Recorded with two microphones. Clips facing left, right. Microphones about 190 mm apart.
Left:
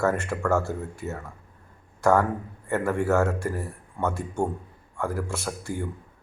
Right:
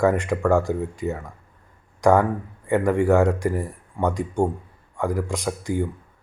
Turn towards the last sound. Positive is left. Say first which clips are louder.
# right 6 dB
turn(degrees=-15)  # may be behind; listen again after turning